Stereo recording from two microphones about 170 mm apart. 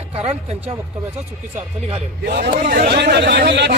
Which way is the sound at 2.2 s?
65° right (ahead or behind).